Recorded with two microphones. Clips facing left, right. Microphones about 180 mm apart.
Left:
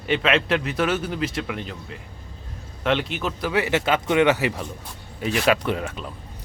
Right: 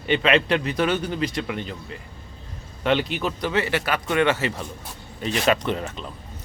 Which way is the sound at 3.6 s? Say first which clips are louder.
Left 3 dB; 20° left (ahead or behind).